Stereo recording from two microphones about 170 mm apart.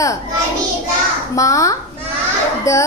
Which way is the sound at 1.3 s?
20° left (ahead or behind).